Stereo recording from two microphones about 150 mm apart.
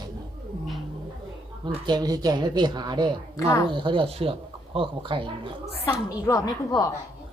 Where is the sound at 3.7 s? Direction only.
35° right (ahead or behind).